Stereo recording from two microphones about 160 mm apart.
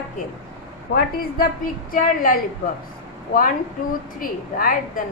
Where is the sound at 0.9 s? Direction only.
65° left (ahead or behind).